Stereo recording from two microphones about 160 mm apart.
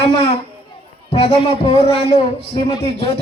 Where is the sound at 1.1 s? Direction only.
35° left (ahead or behind).